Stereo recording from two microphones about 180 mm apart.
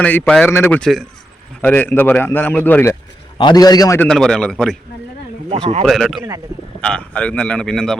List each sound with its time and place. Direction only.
0.0 s a man's voice: 10° left (ahead or behind)
3.3 s a man's voice: 25° left (ahead or behind)
4.0 s a man's voice: 5° left (ahead or behind)
5.8 s a man's voice: centre (ahead or behind)